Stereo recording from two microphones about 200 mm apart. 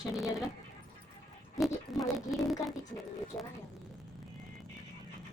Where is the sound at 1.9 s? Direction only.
Centre (ahead or behind).